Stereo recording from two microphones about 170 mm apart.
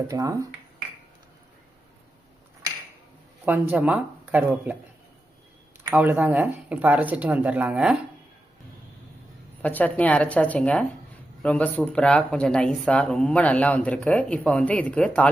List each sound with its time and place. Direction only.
0.1 s speech: 20° right (ahead or behind)
3.4 s speech: 10° right (ahead or behind)
5.9 s speech: 10° right (ahead or behind)
9.6 s speech: 10° left (ahead or behind)